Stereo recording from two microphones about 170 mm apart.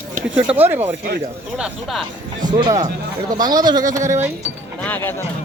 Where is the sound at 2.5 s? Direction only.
25° right (ahead or behind).